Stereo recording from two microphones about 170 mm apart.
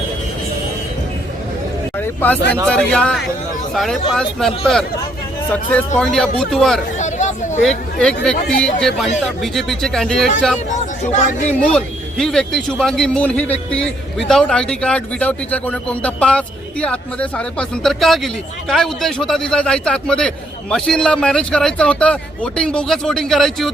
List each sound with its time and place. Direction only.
2.0 s a sound: 10° left (ahead or behind)
2.6 s a man's voice: 5° left (ahead or behind)
6.0 s a man's voice: 5° left (ahead or behind)
7.0 s hubbub: 45° left (ahead or behind)
7.6 s a man's voice: 5° left (ahead or behind)
11.0 s speech: 45° left (ahead or behind)
11.6 s a man's voice: 5° left (ahead or behind)